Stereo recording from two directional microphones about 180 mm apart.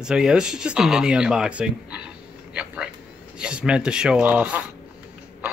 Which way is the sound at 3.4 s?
5° right (ahead or behind).